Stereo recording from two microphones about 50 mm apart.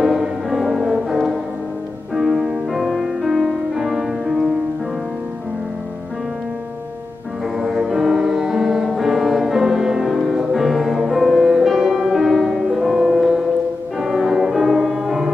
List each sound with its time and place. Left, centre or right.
0.0 s music: centre
7.5 s music: centre